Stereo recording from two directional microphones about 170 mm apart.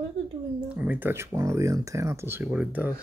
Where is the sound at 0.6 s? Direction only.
10° right (ahead or behind).